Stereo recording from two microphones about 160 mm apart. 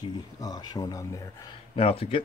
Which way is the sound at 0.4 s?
25° left (ahead or behind).